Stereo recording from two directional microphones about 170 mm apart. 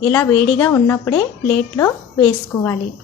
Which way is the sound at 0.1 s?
15° left (ahead or behind).